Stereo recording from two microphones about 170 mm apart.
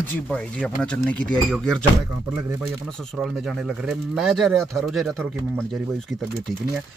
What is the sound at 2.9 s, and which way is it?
Speech, centre (ahead or behind).